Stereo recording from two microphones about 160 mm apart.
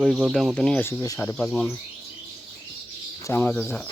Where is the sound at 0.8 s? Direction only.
20° left (ahead or behind).